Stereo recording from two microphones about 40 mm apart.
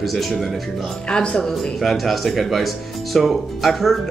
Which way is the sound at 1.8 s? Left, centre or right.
Centre.